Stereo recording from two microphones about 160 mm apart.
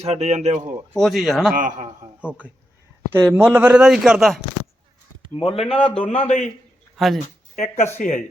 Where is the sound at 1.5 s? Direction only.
55° right (ahead or behind).